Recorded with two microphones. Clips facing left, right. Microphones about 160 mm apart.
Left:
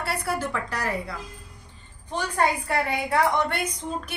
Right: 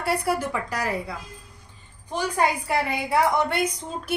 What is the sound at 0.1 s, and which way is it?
A woman's voice, 15° right (ahead or behind).